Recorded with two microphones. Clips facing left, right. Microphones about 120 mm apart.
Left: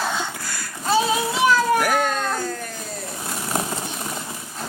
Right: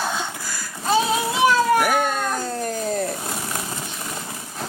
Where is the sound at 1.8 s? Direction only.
5° right (ahead or behind).